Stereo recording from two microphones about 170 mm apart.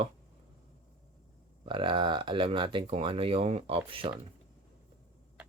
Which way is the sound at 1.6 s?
30° right (ahead or behind).